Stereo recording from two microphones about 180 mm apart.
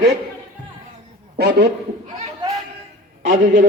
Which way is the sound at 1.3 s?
65° right (ahead or behind).